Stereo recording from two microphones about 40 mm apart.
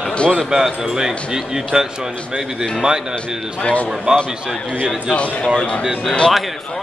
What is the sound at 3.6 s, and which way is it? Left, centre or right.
Speech, left.